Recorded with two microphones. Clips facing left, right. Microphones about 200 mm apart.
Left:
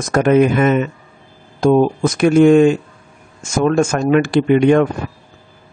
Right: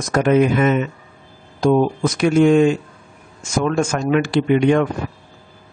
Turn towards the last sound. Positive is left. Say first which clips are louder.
# left 3 dB
turn(degrees=50)  # may be behind; listen again after turning